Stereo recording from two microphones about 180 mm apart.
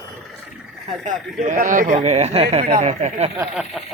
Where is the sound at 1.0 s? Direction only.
45° right (ahead or behind).